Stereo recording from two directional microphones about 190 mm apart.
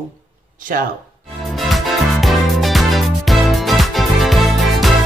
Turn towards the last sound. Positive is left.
turn(degrees=0)  # may be behind; listen again after turning